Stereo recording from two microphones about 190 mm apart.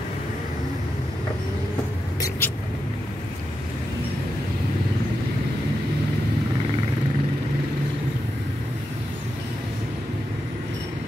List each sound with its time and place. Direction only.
2.1 s vehicle: 15° left (ahead or behind)